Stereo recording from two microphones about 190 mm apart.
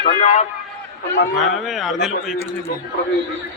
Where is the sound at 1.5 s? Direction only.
Centre (ahead or behind).